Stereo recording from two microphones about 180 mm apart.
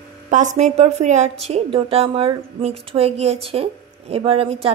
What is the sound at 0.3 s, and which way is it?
A woman's voice, 45° right (ahead or behind).